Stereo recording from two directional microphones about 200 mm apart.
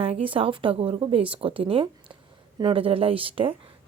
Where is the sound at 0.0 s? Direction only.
25° right (ahead or behind).